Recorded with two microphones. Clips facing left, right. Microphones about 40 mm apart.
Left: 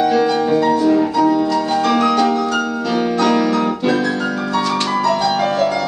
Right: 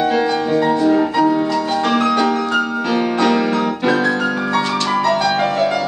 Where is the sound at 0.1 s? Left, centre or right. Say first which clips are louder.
Left 2 dB; centre.